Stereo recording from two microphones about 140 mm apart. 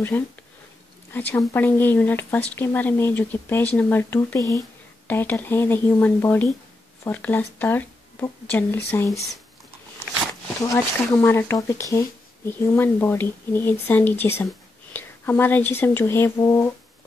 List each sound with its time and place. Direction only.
0.1 s speech: 15° left (ahead or behind)
10.7 s speech: 20° left (ahead or behind)